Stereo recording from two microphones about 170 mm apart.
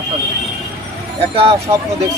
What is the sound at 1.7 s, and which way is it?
Speech, 30° right (ahead or behind).